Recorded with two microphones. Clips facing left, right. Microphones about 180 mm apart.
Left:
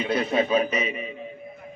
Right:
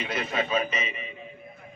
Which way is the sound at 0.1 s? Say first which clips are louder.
Left 7 dB; 35° left (ahead or behind).